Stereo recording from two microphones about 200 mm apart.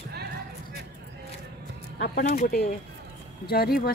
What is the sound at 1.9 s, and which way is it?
Speech, 50° left (ahead or behind).